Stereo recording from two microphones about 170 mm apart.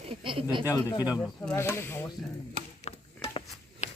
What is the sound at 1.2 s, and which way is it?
Speech, 10° left (ahead or behind).